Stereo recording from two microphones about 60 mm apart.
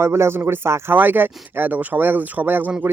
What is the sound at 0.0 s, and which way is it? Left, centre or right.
Speech, right.